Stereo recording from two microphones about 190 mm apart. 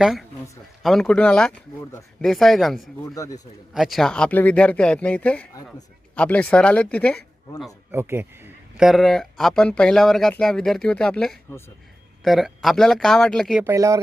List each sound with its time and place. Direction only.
0.0 s speech: centre (ahead or behind)
3.2 s speech: 15° left (ahead or behind)
3.8 s speech: centre (ahead or behind)
7.6 s speech: 10° right (ahead or behind)
8.8 s speech: centre (ahead or behind)
13.7 s speech: 15° right (ahead or behind)